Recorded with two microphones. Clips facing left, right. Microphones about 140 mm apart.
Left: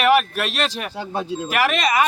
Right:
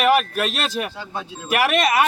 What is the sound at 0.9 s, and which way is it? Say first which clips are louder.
Speech: left 5 dB; 45° left (ahead or behind).